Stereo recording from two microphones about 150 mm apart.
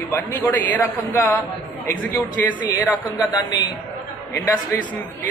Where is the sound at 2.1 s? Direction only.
20° left (ahead or behind).